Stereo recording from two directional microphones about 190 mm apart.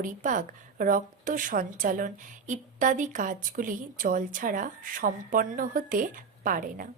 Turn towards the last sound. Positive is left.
turn(degrees=-45)  # may be behind; listen again after turning